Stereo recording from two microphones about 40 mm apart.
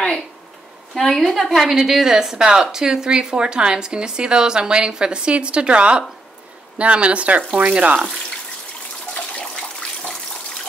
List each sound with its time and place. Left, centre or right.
0.9 s a woman's voice: centre
1.6 s a woman's voice: centre; by 8.1 s right